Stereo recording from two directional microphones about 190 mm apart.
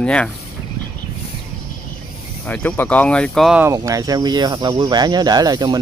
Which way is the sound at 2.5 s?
5° left (ahead or behind).